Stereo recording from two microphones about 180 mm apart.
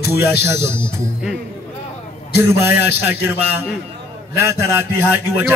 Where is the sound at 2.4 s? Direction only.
15° right (ahead or behind).